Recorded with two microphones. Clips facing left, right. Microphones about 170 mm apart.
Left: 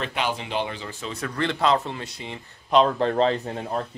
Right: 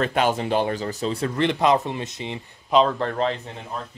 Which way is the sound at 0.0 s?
45° right (ahead or behind).